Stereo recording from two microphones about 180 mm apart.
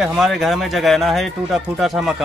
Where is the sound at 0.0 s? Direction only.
Centre (ahead or behind).